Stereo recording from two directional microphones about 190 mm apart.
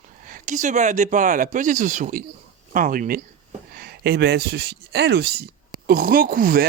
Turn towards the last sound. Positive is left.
turn(degrees=-50)  # may be behind; listen again after turning